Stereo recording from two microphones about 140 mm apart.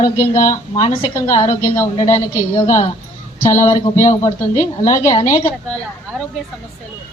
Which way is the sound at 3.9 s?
45° left (ahead or behind).